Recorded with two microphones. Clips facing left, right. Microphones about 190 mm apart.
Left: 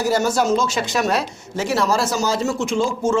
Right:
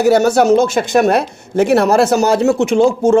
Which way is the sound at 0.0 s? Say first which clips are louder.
Right 8 dB; 65° right (ahead or behind).